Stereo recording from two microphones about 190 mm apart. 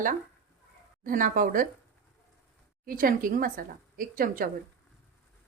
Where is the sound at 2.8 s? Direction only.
50° right (ahead or behind).